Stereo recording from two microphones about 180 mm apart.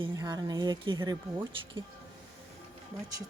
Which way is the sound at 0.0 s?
20° right (ahead or behind).